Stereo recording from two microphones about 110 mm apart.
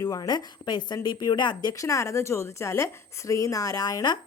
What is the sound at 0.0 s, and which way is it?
Speech, 35° left (ahead or behind).